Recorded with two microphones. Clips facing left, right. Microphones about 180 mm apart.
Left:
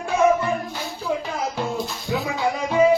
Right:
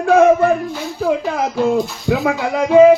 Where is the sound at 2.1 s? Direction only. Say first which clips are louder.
Right 7 dB; 90° right.